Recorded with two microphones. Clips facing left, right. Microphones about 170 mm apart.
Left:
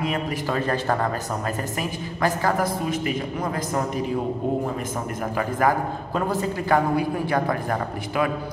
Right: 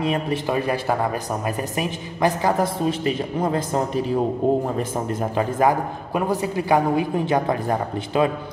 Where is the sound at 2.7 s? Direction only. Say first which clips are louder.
Right 3 dB; 30° right (ahead or behind).